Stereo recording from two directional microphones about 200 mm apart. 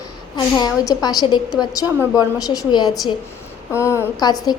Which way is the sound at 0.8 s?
20° left (ahead or behind).